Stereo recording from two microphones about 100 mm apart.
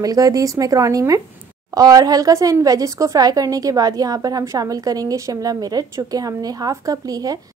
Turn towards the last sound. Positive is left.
turn(degrees=-35)  # may be behind; listen again after turning